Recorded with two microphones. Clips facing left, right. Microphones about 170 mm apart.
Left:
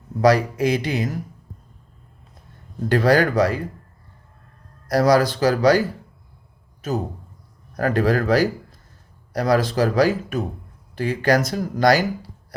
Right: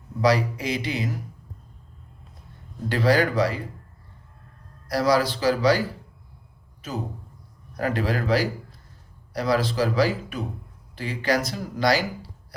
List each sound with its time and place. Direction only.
0.2 s speech: 45° left (ahead or behind)
2.9 s speech: 45° left (ahead or behind)
4.9 s speech: 45° left (ahead or behind)
6.8 s speech: 45° left (ahead or behind)